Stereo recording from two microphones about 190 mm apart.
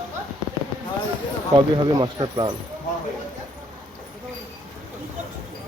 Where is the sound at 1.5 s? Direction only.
25° right (ahead or behind).